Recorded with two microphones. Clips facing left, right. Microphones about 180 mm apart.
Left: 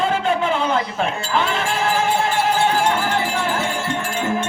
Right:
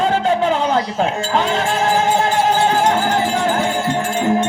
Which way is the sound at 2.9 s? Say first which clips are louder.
Right 4 dB; 35° right (ahead or behind).